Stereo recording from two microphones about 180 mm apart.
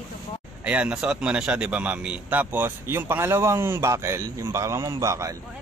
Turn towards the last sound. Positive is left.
turn(degrees=-15)  # may be behind; listen again after turning